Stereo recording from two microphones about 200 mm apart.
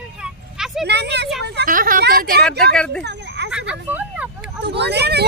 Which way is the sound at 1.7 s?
45° right (ahead or behind).